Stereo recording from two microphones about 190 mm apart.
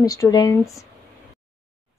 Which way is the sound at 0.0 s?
20° left (ahead or behind).